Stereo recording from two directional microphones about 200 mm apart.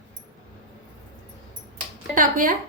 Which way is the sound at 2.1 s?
45° right (ahead or behind).